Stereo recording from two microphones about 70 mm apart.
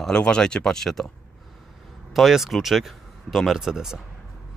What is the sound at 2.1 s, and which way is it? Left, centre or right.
Speech, centre.